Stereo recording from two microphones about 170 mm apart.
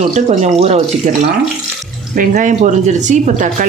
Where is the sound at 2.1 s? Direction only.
50° right (ahead or behind).